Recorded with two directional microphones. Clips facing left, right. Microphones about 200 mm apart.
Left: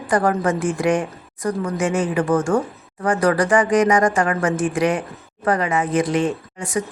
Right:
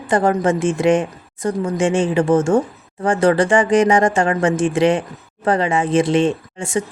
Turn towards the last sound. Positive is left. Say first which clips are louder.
# right 2 dB
turn(degrees=-25)  # may be behind; listen again after turning